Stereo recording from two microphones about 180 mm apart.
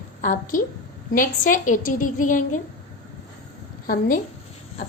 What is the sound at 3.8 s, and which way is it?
Speech, 50° left (ahead or behind).